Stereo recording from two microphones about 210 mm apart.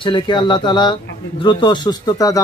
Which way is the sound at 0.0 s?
20° left (ahead or behind).